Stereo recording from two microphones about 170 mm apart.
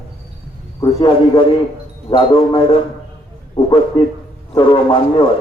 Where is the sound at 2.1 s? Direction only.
30° left (ahead or behind).